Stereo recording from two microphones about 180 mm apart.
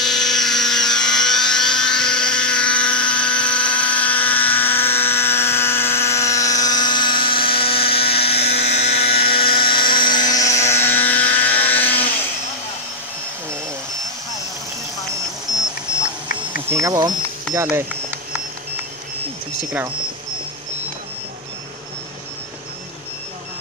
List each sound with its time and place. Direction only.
0.0 s helicopter: centre (ahead or behind)
16.7 s speech: 20° right (ahead or behind)
17.6 s a sound: 15° right (ahead or behind)